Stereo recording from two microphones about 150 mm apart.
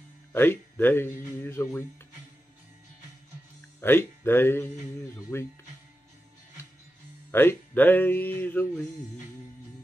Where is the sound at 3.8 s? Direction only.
15° left (ahead or behind).